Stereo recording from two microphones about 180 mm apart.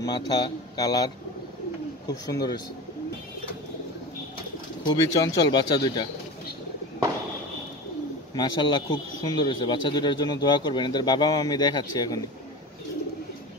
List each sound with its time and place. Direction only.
0.0 s speech: 20° left (ahead or behind)
4.8 s speech: 25° left (ahead or behind)
8.4 s speech: 25° left (ahead or behind)